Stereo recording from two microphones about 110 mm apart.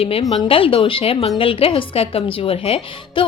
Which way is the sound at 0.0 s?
65° left (ahead or behind).